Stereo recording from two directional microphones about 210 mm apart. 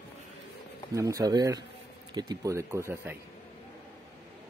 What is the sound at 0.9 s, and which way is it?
Speech, 15° right (ahead or behind).